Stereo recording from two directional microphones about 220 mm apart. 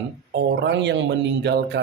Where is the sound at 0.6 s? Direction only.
50° right (ahead or behind).